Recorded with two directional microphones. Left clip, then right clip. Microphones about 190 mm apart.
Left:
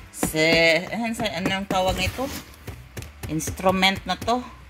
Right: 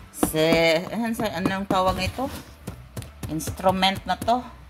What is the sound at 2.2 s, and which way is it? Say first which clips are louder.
Speech: even; 15° left (ahead or behind).